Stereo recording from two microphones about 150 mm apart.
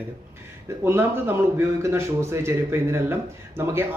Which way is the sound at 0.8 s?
15° right (ahead or behind).